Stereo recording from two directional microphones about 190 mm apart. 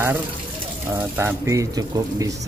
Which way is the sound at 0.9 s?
15° right (ahead or behind).